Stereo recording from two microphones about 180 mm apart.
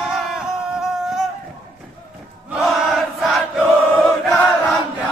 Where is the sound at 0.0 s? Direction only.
Centre (ahead or behind).